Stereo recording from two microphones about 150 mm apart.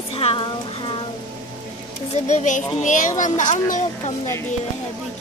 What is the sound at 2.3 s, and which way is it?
Speech, 55° left (ahead or behind).